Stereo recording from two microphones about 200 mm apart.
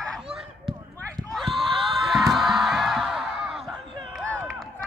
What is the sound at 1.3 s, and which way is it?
Music, centre (ahead or behind).